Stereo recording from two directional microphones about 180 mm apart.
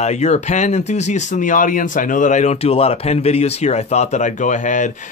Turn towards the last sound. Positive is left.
turn(degrees=45)  # may be behind; listen again after turning